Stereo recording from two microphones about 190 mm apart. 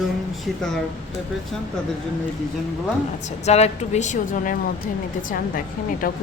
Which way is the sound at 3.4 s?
35° left (ahead or behind).